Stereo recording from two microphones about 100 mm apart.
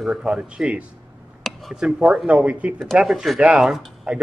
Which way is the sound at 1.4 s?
Centre (ahead or behind).